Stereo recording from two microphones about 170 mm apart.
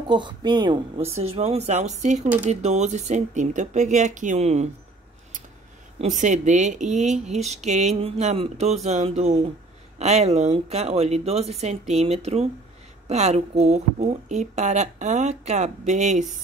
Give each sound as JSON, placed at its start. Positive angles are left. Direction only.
{"t": 0.1, "sound": "a woman's voice", "side_deg": -25}
{"t": 5.9, "sound": "a woman's voice", "side_deg": -45}